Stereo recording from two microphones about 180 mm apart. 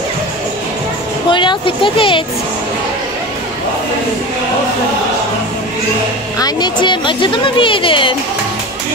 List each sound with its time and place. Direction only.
1.3 s a woman's voice: 25° left (ahead or behind)
6.4 s a woman's voice: 25° left (ahead or behind)